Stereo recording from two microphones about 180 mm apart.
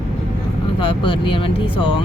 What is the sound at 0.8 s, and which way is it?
Speech, 30° left (ahead or behind).